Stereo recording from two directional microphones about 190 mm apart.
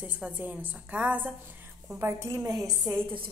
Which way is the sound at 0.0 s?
10° right (ahead or behind).